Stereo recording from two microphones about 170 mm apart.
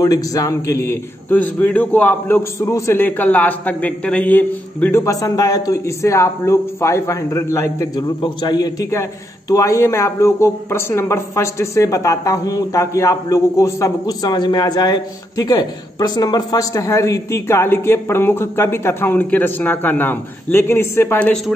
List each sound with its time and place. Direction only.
0.0 s speech: 20° left (ahead or behind)